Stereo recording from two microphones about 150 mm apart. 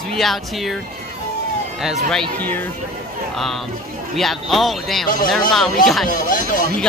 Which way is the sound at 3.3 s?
Centre (ahead or behind).